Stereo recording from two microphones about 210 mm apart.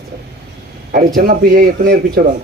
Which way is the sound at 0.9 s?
45° right (ahead or behind).